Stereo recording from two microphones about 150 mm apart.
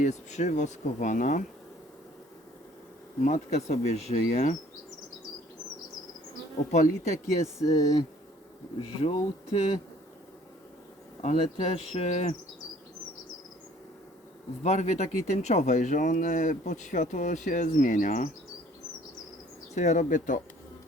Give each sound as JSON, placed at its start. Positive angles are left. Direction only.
{"t": 0.0, "sound": "speech", "side_deg": 50}
{"t": 3.2, "sound": "speech", "side_deg": 50}
{"t": 6.7, "sound": "speech", "side_deg": 50}
{"t": 9.0, "sound": "speech", "side_deg": 45}
{"t": 11.2, "sound": "speech", "side_deg": 50}
{"t": 14.6, "sound": "speech", "side_deg": 50}
{"t": 19.7, "sound": "speech", "side_deg": 50}